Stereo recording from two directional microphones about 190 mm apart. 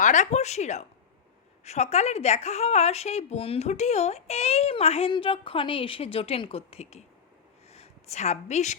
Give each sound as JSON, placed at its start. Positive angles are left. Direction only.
{"t": 0.0, "sound": "a woman's voice", "side_deg": 40}